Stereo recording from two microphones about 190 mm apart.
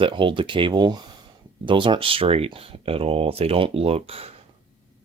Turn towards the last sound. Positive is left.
turn(degrees=-30)  # may be behind; listen again after turning